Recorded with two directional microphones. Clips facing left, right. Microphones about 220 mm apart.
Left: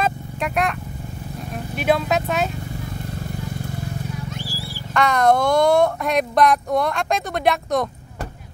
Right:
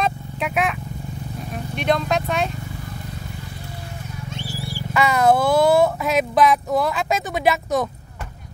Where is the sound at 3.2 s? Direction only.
45° left (ahead or behind).